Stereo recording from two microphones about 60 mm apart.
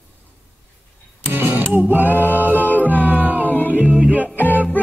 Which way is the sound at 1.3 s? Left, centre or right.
Right.